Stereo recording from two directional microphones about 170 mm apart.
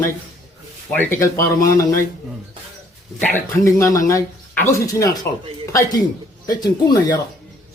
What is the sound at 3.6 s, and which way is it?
Speech, 20° left (ahead or behind).